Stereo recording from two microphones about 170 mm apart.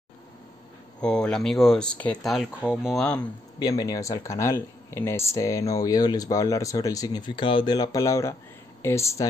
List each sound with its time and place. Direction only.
1.0 s speech: 5° left (ahead or behind)
3.5 s speech: 20° left (ahead or behind)